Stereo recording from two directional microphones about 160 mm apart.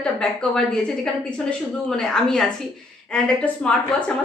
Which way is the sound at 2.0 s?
5° left (ahead or behind).